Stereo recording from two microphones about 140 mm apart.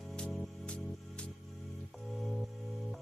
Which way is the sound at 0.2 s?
5° left (ahead or behind).